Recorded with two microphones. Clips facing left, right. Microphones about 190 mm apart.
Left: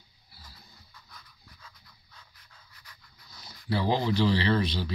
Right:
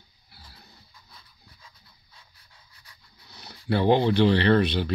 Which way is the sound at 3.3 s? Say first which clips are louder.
Right 5 dB; 65° right (ahead or behind).